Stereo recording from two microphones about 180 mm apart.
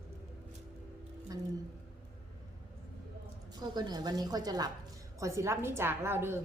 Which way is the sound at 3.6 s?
25° right (ahead or behind).